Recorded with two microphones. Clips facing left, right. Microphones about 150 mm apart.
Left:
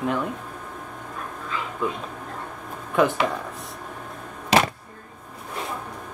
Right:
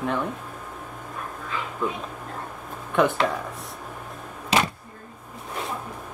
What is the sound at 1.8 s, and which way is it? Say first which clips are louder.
Speech: even; 5° left (ahead or behind).